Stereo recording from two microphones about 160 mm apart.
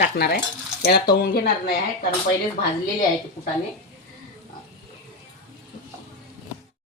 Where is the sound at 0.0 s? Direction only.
80° left.